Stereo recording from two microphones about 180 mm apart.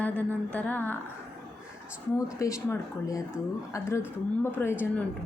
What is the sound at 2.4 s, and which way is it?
A woman's voice, 15° left (ahead or behind).